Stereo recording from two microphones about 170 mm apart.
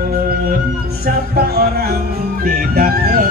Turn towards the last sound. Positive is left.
turn(degrees=-60)  # may be behind; listen again after turning